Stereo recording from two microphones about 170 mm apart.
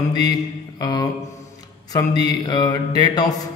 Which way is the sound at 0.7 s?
25° left (ahead or behind).